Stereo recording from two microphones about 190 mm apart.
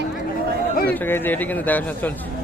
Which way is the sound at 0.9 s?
10° left (ahead or behind).